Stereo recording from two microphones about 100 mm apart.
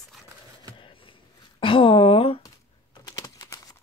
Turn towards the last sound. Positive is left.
turn(degrees=35)  # may be behind; listen again after turning